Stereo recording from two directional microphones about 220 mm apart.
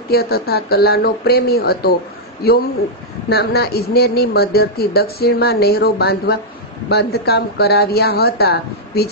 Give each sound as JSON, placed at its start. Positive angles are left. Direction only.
{"t": 0.1, "sound": "speech", "side_deg": 45}